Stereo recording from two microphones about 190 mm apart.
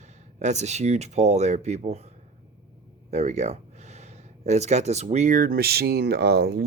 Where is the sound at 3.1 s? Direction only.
35° right (ahead or behind).